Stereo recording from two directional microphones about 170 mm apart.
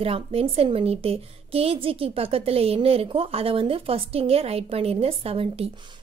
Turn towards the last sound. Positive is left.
turn(degrees=-35)  # may be behind; listen again after turning